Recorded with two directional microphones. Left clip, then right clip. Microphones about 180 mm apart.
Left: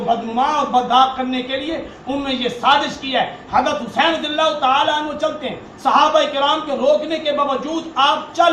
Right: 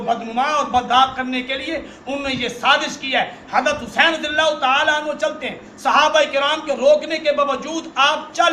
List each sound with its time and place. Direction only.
0.3 s a man's voice: 25° right (ahead or behind)